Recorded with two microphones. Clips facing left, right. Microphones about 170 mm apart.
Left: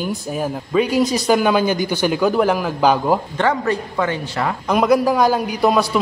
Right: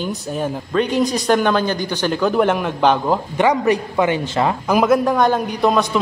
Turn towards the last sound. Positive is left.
turn(degrees=5)  # may be behind; listen again after turning